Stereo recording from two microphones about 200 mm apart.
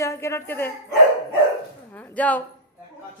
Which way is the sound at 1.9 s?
5° left (ahead or behind).